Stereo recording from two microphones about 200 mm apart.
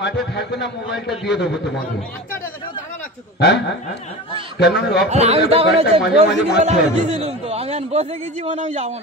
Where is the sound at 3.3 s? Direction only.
55° left (ahead or behind).